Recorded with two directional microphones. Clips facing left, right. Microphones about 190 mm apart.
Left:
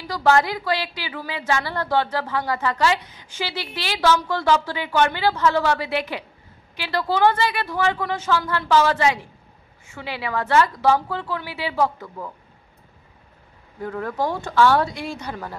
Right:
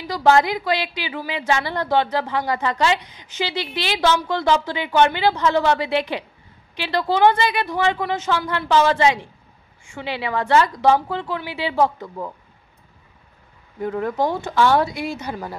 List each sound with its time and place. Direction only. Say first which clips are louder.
0.0 s a woman's voice: right 2 dB; 15° right (ahead or behind)
13.7 s a woman's voice: right 4 dB; 20° right (ahead or behind)